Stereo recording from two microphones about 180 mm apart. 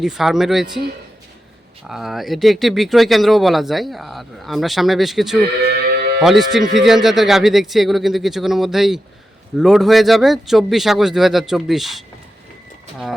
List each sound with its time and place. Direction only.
0.0 s speech: centre (ahead or behind)
1.9 s speech: centre (ahead or behind)
5.6 s livestock: 60° right (ahead or behind)
6.2 s speech: centre (ahead or behind)